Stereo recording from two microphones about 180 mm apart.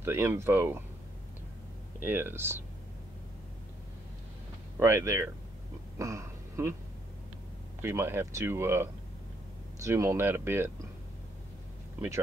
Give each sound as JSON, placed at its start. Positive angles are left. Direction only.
{"t": 0.0, "sound": "speech", "side_deg": -10}
{"t": 2.0, "sound": "speech", "side_deg": -10}
{"t": 4.7, "sound": "speech", "side_deg": -15}
{"t": 5.9, "sound": "a sound", "side_deg": -15}
{"t": 7.8, "sound": "speech", "side_deg": -15}